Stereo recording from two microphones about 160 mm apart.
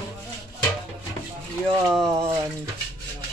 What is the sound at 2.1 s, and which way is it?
Speech, 20° right (ahead or behind).